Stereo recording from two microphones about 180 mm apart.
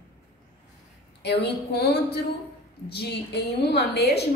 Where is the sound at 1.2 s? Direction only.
65° left (ahead or behind).